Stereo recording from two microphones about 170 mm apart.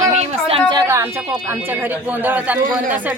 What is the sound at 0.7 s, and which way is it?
Speech, 15° right (ahead or behind).